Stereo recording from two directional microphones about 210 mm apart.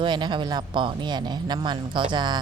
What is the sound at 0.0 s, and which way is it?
Speech, 20° right (ahead or behind).